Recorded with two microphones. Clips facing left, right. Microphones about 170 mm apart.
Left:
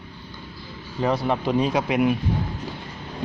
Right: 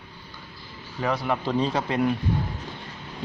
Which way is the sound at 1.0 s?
25° left (ahead or behind).